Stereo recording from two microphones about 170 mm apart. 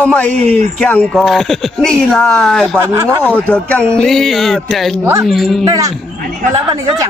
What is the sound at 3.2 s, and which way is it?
A man's voice, 10° left (ahead or behind).